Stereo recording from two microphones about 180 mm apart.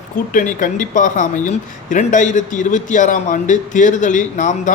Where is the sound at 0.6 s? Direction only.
45° left (ahead or behind).